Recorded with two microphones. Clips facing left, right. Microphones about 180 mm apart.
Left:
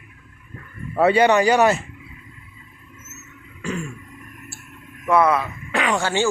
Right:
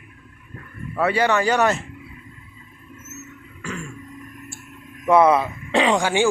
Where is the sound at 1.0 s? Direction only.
25° left (ahead or behind).